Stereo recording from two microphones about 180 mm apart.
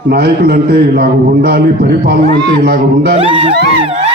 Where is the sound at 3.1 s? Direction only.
30° right (ahead or behind).